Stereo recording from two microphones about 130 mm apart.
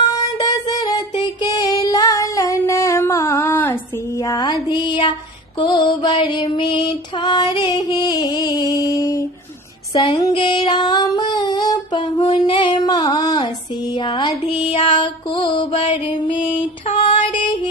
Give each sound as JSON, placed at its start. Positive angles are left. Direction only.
{"t": 0.1, "sound": "child singing", "side_deg": 30}
{"t": 4.2, "sound": "mantra", "side_deg": 30}
{"t": 4.6, "sound": "a sound", "side_deg": 35}
{"t": 5.6, "sound": "music", "side_deg": 35}
{"t": 9.9, "sound": "female singing", "side_deg": 35}
{"t": 12.2, "sound": "a sound", "side_deg": 40}
{"t": 13.9, "sound": "mantra", "side_deg": 35}
{"t": 14.4, "sound": "music", "side_deg": 45}